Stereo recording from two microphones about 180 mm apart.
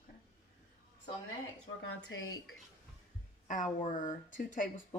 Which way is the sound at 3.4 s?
45° left (ahead or behind).